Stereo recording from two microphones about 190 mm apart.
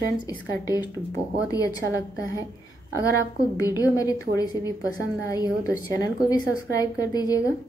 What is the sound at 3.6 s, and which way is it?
A woman's voice, 20° left (ahead or behind).